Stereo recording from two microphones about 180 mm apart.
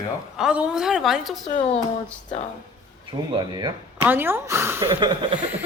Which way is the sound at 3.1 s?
25° right (ahead or behind).